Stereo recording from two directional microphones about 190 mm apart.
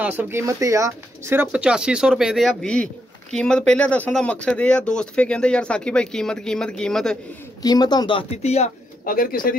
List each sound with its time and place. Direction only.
0.0 s speech: 10° right (ahead or behind)
7.6 s speech: 20° left (ahead or behind)
9.0 s speech: 50° left (ahead or behind)